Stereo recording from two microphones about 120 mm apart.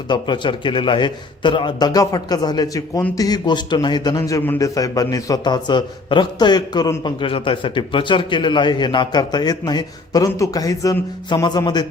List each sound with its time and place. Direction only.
0.1 s a man's voice: 40° left (ahead or behind)